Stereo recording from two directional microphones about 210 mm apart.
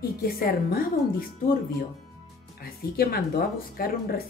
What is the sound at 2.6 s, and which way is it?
A woman's voice, 45° left (ahead or behind).